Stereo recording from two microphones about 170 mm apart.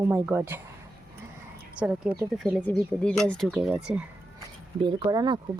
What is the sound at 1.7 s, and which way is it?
Speech, 5° right (ahead or behind).